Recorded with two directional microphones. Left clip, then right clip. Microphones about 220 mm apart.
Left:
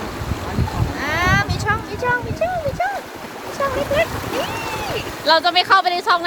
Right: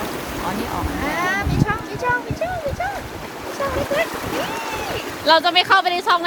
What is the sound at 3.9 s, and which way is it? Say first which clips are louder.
Boat: left 2 dB; 45° left (ahead or behind).